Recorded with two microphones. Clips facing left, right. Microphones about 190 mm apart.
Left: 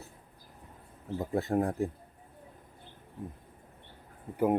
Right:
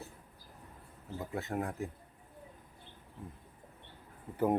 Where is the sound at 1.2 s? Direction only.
35° left (ahead or behind).